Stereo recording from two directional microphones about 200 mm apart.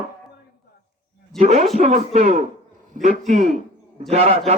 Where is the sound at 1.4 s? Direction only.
35° right (ahead or behind).